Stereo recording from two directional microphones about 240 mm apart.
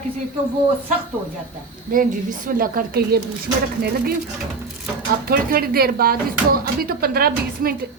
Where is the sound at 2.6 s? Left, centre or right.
Right.